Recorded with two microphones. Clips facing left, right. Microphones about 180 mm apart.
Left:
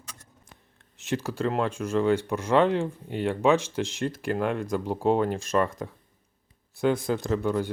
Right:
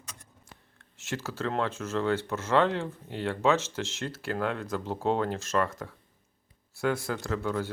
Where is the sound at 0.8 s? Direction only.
15° left (ahead or behind).